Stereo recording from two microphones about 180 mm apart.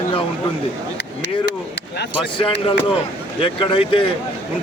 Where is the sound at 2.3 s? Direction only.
30° left (ahead or behind).